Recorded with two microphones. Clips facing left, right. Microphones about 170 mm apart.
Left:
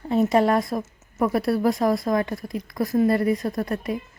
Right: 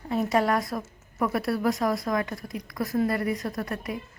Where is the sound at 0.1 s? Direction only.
25° left (ahead or behind).